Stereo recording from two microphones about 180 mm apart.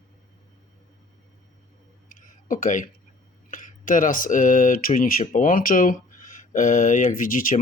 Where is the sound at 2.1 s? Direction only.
50° left (ahead or behind).